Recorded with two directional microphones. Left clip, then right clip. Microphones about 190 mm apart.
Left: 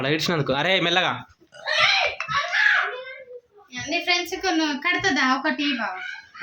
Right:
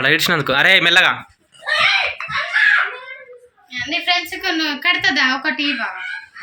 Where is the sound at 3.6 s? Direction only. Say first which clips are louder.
Right 5 dB; 60° left (ahead or behind).